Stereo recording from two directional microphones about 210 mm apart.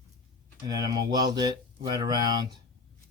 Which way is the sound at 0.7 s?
20° right (ahead or behind).